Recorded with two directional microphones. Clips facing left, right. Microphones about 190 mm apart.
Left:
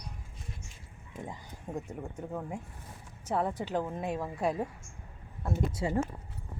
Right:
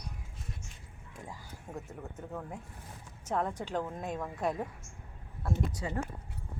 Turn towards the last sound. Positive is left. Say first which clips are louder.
# left 4 dB
turn(degrees=25)  # may be behind; listen again after turning